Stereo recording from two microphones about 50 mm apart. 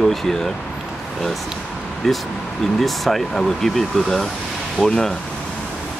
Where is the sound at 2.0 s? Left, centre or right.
Centre.